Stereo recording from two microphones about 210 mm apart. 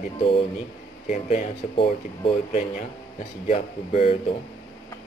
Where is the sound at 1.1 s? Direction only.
35° left (ahead or behind).